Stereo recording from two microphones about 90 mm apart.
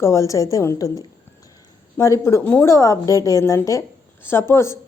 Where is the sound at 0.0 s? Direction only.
35° left (ahead or behind).